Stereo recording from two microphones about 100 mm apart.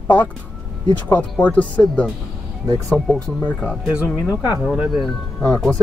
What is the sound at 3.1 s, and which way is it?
Speech, 15° left (ahead or behind).